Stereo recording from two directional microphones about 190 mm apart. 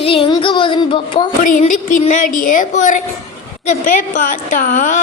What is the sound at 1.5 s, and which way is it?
A woman's voice, 45° left (ahead or behind).